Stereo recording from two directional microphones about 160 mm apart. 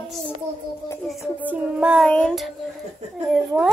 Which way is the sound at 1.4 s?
10° right (ahead or behind).